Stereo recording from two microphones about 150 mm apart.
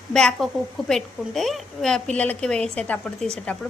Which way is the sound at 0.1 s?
5° left (ahead or behind).